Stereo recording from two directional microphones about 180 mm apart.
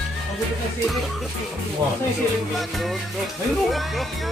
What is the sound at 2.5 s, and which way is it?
Music, centre (ahead or behind).